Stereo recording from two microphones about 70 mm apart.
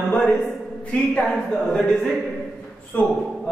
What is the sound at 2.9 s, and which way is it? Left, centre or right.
Speech, left.